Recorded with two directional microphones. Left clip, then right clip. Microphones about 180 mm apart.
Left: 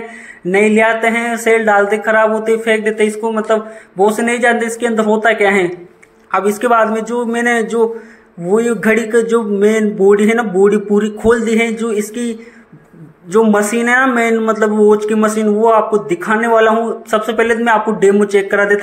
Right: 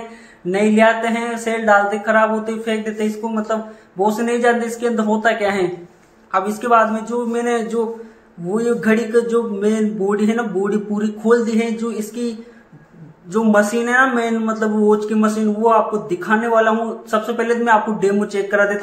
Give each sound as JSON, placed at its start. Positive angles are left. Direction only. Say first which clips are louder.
{"t": 0.5, "sound": "a man's voice", "louder": "left 3 dB", "side_deg": 30}
{"t": 13.3, "sound": "a man's voice", "louder": "left 4 dB", "side_deg": 30}